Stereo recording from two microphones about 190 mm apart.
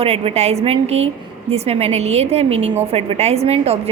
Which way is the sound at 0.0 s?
30° right (ahead or behind).